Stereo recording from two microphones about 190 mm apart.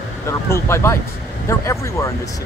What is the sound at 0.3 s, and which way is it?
Speech, 15° left (ahead or behind).